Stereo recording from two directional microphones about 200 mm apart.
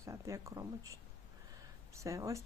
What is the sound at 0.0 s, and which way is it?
Speech, 15° right (ahead or behind).